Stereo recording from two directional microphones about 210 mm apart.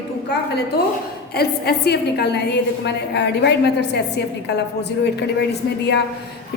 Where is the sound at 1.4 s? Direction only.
50° left (ahead or behind).